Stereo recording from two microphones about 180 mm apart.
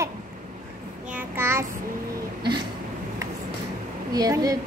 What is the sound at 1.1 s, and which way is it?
Child singing, 15° right (ahead or behind).